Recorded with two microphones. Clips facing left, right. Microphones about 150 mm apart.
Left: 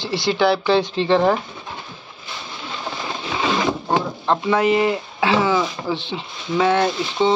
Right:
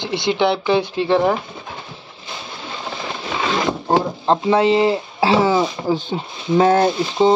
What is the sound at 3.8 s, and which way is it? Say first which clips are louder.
Speech: right 3 dB; 35° right (ahead or behind).